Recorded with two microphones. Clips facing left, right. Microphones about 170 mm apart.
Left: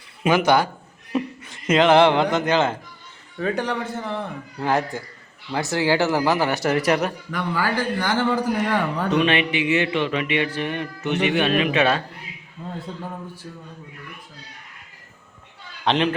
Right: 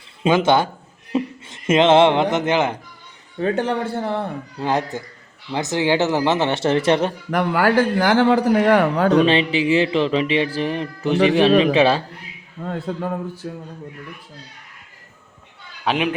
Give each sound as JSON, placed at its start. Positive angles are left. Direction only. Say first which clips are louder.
{"t": 0.2, "sound": "speech", "louder": "right 2 dB", "side_deg": -20}
{"t": 4.6, "sound": "speech", "louder": "right 1 dB", "side_deg": -20}
{"t": 7.3, "sound": "speech", "louder": "right 6 dB", "side_deg": -60}
{"t": 8.0, "sound": "a man's voice", "louder": "right 5 dB", "side_deg": -70}
{"t": 9.1, "sound": "speech", "louder": "right 1 dB", "side_deg": -30}
{"t": 12.6, "sound": "a man's voice", "louder": "right 7 dB", "side_deg": -70}
{"t": 15.8, "sound": "a man's voice", "louder": "even", "side_deg": -10}